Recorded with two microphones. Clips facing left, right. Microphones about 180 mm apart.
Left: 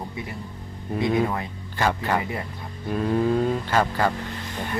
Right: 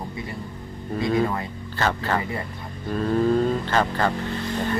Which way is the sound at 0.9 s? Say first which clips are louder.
Even; 15° left (ahead or behind).